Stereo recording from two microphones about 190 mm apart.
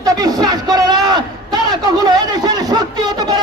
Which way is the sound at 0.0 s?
20° right (ahead or behind).